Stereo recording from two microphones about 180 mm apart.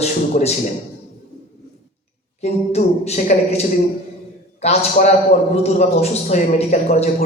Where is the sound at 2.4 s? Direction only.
35° left (ahead or behind).